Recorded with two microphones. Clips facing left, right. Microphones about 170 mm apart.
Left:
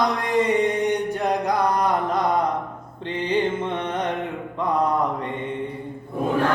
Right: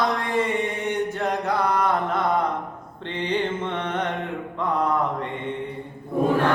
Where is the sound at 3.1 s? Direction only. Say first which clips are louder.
Left 3 dB; 10° left (ahead or behind).